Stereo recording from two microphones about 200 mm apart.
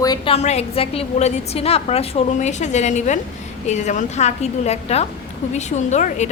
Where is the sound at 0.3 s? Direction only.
30° left (ahead or behind).